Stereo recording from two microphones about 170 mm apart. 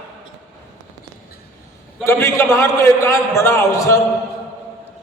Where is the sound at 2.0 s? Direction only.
15° left (ahead or behind).